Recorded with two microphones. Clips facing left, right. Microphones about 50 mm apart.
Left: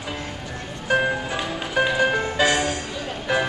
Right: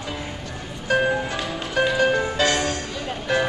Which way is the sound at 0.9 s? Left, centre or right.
Centre.